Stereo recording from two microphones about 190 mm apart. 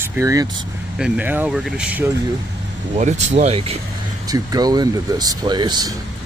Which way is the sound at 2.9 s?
40° right (ahead or behind).